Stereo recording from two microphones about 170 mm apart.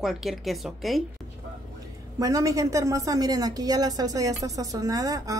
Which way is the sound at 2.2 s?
20° right (ahead or behind).